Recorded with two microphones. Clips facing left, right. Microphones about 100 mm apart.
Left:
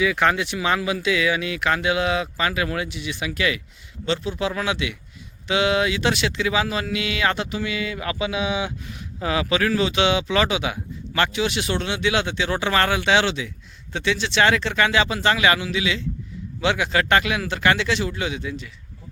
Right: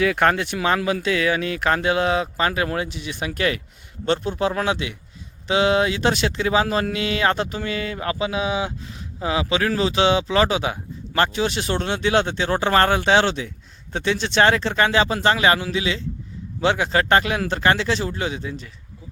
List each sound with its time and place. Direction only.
0.0 s speech: 50° right (ahead or behind)